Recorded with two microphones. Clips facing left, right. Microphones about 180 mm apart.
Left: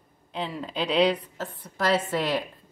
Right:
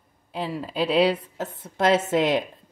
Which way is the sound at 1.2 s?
25° right (ahead or behind).